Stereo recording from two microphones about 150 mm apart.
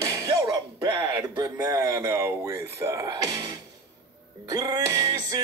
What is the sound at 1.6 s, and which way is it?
Speech, 20° right (ahead or behind).